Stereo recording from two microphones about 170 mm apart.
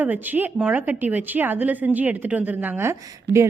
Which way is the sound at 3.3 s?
90° right.